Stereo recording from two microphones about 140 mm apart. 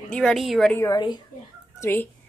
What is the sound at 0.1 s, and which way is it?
Speech, centre (ahead or behind).